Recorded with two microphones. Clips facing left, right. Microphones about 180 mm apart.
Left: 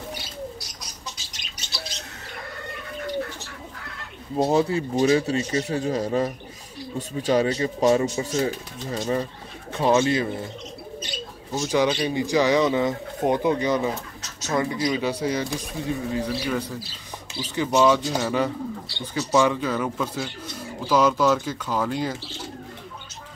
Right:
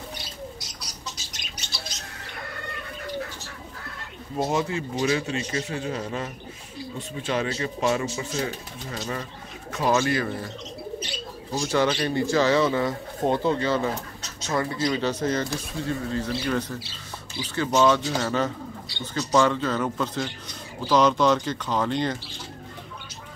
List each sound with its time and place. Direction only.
4.4 s speech: 35° left (ahead or behind)
11.5 s speech: 15° left (ahead or behind)